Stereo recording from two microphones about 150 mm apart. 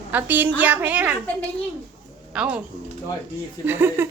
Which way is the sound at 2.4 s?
5° right (ahead or behind).